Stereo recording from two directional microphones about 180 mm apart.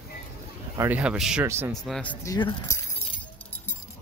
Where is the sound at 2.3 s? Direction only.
20° left (ahead or behind).